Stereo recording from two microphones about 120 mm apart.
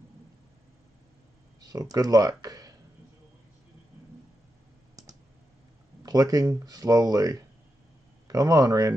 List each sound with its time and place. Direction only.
1.6 s speech: 30° right (ahead or behind)
6.0 s speech: 30° right (ahead or behind)